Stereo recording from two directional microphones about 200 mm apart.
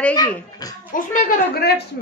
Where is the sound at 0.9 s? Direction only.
40° left (ahead or behind).